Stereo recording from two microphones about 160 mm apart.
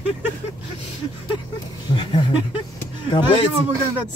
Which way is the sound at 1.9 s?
30° left (ahead or behind).